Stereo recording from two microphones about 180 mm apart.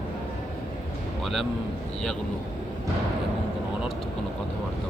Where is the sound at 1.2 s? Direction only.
Centre (ahead or behind).